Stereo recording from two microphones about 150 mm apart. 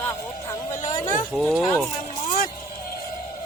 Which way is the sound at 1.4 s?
Centre (ahead or behind).